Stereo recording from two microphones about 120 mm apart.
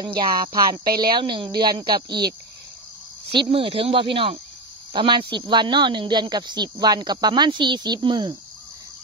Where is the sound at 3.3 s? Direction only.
45° right (ahead or behind).